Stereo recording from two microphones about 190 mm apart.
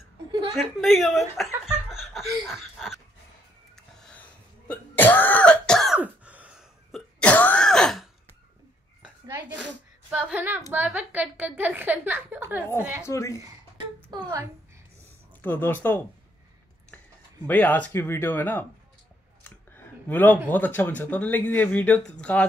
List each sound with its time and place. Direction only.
0.3 s a woman's voice: 25° right (ahead or behind)
0.6 s chuckle: centre (ahead or behind)
2.4 s wheeze: centre (ahead or behind)
3.7 s cough: 5° left (ahead or behind)
7.2 s throat clearing: 5° left (ahead or behind)
10.1 s a woman's voice: 5° right (ahead or behind)
13.0 s speech: 15° left (ahead or behind)
14.1 s a child's voice: 20° right (ahead or behind)
15.4 s speech: 10° left (ahead or behind)
17.5 s speech: 10° left (ahead or behind)
19.7 s a sound: 10° left (ahead or behind)
20.4 s speech: 10° left (ahead or behind)